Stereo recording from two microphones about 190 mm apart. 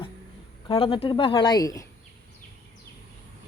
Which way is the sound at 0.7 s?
30° left (ahead or behind).